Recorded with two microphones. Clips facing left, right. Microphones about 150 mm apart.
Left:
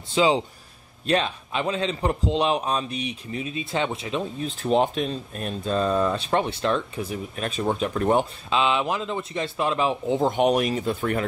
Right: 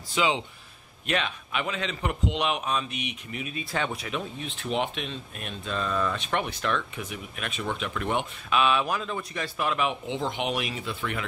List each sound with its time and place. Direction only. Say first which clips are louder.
0.1 s a man's voice: left 6 dB; 35° left (ahead or behind)
8.5 s a man's voice: right 2 dB; 25° left (ahead or behind); by 11.2 s 45° left (ahead or behind)